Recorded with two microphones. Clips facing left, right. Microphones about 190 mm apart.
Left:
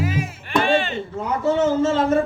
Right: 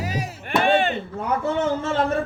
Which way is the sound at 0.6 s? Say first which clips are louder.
Right 1 dB; 55° right (ahead or behind).